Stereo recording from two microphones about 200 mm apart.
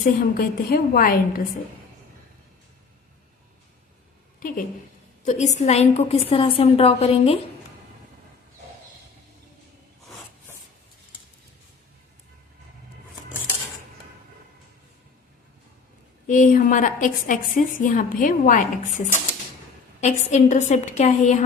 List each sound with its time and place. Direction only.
0.0 s a woman's voice: 45° left (ahead or behind)
4.4 s a woman's voice: 45° left (ahead or behind)
16.2 s a woman's voice: 40° left (ahead or behind)